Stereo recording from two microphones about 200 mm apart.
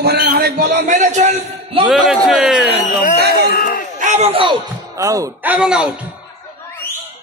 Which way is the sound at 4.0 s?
35° right (ahead or behind).